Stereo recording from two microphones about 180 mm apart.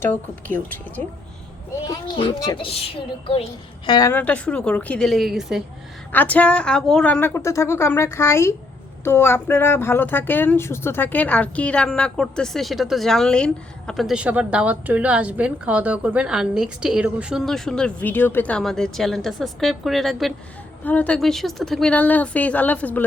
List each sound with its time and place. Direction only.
0.0 s a woman's voice: 10° left (ahead or behind)
1.9 s speech: 25° left (ahead or behind)
3.8 s speech: 25° left (ahead or behind)
4.1 s speech: 10° left (ahead or behind)
6.1 s a woman's voice: 10° left (ahead or behind)